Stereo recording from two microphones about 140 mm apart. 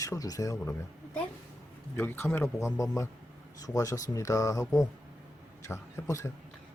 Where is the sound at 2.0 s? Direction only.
15° left (ahead or behind).